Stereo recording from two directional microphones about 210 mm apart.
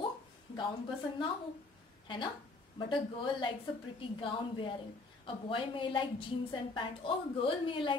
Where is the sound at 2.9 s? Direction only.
25° left (ahead or behind).